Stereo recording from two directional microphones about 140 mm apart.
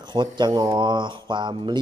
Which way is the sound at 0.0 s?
35° right (ahead or behind).